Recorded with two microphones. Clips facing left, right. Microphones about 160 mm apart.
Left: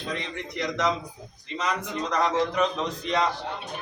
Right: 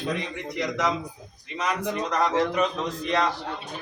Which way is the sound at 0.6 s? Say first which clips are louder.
Even; 10° right (ahead or behind).